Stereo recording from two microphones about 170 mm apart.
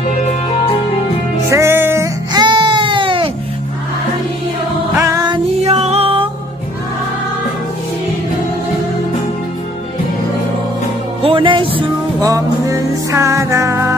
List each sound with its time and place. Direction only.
1.5 s music: 15° right (ahead or behind)
2.3 s baby cry: 25° right (ahead or behind)
4.9 s music: 20° right (ahead or behind)
5.6 s music: 40° right (ahead or behind)
11.2 s music: 30° right (ahead or behind)